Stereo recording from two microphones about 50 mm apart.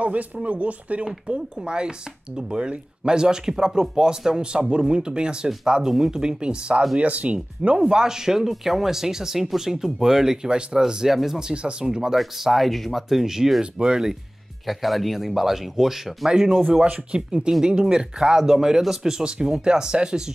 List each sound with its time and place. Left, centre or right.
0.0 s speech: right
1.0 s speech: centre
12.2 s speech: centre
14.7 s speech: centre
16.3 s speech: centre